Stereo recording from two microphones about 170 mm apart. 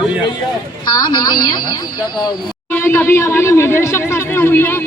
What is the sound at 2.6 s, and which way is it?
Speech, 15° left (ahead or behind).